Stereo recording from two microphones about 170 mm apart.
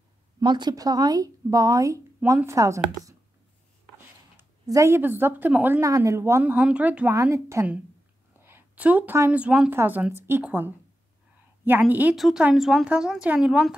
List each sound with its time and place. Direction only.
0.4 s speech: 25° right (ahead or behind)
4.4 s a woman's voice: 15° right (ahead or behind)